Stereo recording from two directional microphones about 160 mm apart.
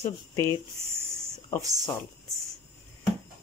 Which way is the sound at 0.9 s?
15° right (ahead or behind).